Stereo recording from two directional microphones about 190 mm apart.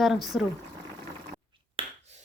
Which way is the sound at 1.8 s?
30° right (ahead or behind).